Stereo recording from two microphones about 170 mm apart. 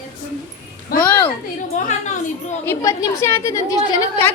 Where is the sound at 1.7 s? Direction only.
45° left (ahead or behind).